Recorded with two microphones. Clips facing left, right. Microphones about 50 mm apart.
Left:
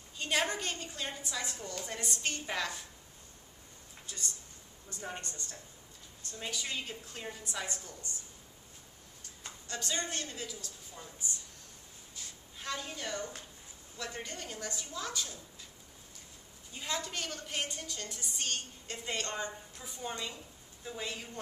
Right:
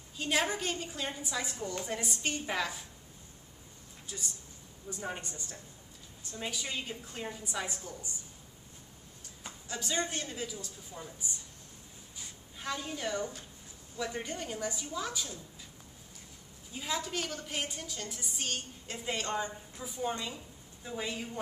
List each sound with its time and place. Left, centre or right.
0.2 s a woman's voice: centre
4.8 s a woman's voice: centre
9.4 s a woman's voice: centre
12.2 s a sound: centre
13.0 s a woman's voice: centre
16.7 s a woman's voice: centre